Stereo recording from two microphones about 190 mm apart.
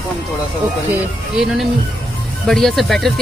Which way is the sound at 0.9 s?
5° right (ahead or behind).